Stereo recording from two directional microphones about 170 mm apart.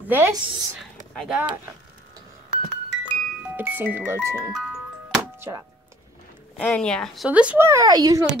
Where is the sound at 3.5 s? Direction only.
10° right (ahead or behind).